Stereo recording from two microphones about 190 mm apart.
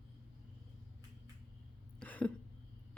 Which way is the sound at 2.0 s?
5° left (ahead or behind).